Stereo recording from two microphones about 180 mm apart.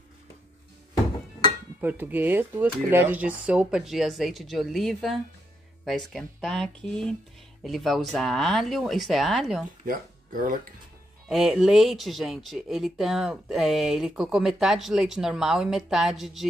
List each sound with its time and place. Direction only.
1.8 s speech: 10° right (ahead or behind)
9.8 s speech: 50° right (ahead or behind)
11.2 s speech: centre (ahead or behind)